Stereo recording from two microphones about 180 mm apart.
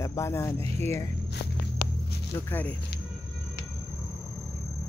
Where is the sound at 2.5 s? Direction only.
10° left (ahead or behind).